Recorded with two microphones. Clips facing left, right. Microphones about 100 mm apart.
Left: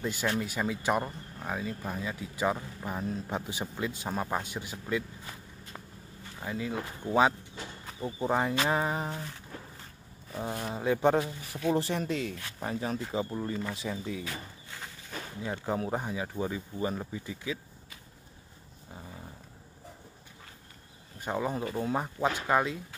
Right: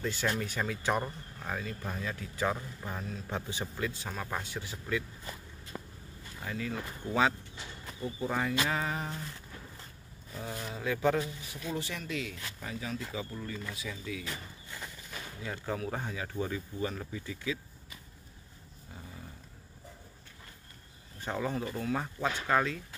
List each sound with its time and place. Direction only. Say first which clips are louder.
0.0 s speech: left 2 dB; 10° left (ahead or behind)
6.4 s speech: left 3 dB; 15° left (ahead or behind)
10.5 s speech: left 5 dB; 35° left (ahead or behind)
15.4 s speech: left 4 dB; 20° left (ahead or behind)
21.2 s speech: left 2 dB; 15° left (ahead or behind)